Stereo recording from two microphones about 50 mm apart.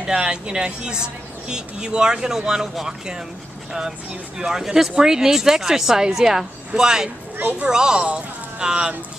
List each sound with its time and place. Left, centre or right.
0.0 s a woman's voice: centre
4.4 s a woman's voice: centre
7.3 s speech: right
7.6 s a woman's voice: centre